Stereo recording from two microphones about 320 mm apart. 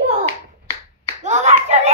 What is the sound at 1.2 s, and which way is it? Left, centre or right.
Clapping, right.